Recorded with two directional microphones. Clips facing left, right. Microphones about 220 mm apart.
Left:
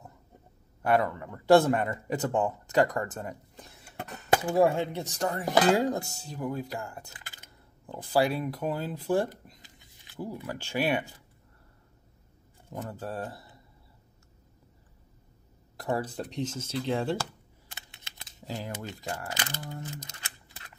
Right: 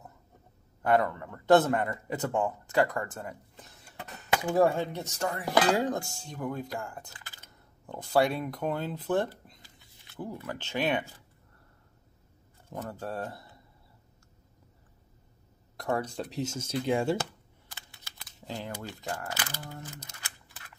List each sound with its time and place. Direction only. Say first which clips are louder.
0.8 s speech: even; 10° left (ahead or behind)
4.5 s speech: even; 5° left (ahead or behind)
5.0 s cutlery: left 2 dB; 35° left (ahead or behind)
5.7 s speech: left 2 dB; 10° left (ahead or behind)
7.1 s a sound: left 1 dB; 20° left (ahead or behind)
8.1 s speech: even; 5° left (ahead or behind)
12.7 s speech: even; 5° left (ahead or behind)
15.8 s speech: even; 5° left (ahead or behind)
17.6 s computer keyboard: left 1 dB; 25° left (ahead or behind)
18.5 s speech: left 1 dB; 10° left (ahead or behind)